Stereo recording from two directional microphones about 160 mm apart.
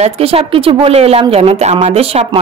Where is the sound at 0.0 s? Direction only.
35° right (ahead or behind).